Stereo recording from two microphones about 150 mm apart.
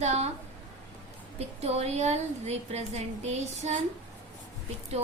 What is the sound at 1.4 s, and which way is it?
A woman's voice, 45° right (ahead or behind).